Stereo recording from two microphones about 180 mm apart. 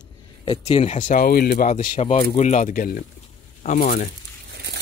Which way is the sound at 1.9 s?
30° left (ahead or behind).